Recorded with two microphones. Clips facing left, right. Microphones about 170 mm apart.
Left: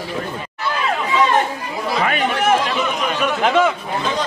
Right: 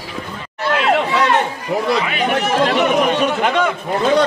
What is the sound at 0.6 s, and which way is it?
Chatter, 75° right (ahead or behind).